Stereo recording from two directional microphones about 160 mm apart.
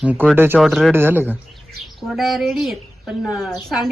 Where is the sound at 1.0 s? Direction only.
10° right (ahead or behind).